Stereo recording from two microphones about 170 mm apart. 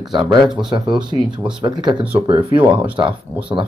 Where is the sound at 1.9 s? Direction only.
10° right (ahead or behind).